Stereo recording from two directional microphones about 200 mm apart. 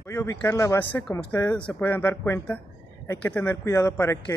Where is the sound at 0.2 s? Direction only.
10° left (ahead or behind).